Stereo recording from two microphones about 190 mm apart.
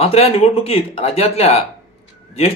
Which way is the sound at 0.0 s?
30° left (ahead or behind).